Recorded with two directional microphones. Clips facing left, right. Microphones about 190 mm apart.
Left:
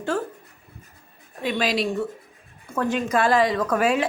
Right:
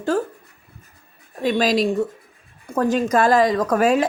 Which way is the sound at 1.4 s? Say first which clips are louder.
Right 5 dB; 40° right (ahead or behind).